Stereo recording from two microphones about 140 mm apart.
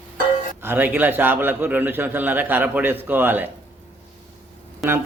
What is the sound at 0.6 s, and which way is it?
A man's voice, 15° right (ahead or behind).